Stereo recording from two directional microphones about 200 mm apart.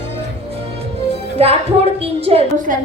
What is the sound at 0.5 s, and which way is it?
Music, 30° right (ahead or behind).